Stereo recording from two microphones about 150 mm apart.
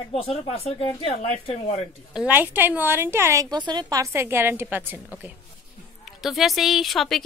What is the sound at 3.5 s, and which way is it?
A woman's voice, 30° right (ahead or behind).